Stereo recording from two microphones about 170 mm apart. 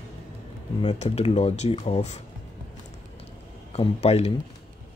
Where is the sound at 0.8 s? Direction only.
35° left (ahead or behind).